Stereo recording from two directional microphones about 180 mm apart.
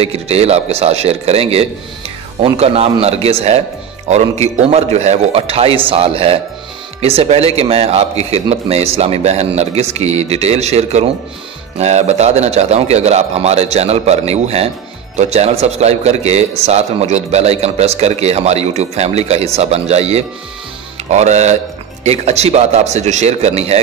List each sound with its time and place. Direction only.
0.0 s a man's voice: 35° right (ahead or behind)